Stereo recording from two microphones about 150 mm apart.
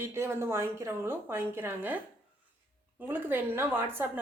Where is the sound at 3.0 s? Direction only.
15° right (ahead or behind).